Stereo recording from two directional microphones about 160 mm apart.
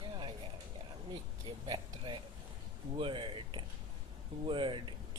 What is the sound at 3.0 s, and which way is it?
Speech, 30° right (ahead or behind).